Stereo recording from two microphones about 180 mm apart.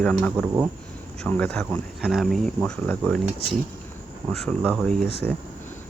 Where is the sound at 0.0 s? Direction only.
5° left (ahead or behind).